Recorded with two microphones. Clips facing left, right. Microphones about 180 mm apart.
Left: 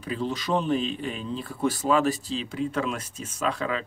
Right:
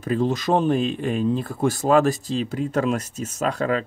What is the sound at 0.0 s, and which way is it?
Speech, 45° right (ahead or behind).